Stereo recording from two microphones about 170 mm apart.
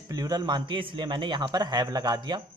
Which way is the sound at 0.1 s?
20° right (ahead or behind).